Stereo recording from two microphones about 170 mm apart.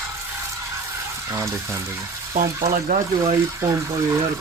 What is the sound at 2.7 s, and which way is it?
Speech, 55° right (ahead or behind).